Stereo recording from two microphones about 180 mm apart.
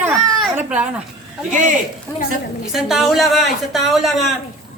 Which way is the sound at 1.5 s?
45° right (ahead or behind).